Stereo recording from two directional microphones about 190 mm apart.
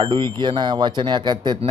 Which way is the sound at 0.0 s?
25° right (ahead or behind).